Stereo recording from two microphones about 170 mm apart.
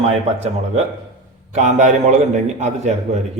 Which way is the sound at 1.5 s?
45° right (ahead or behind).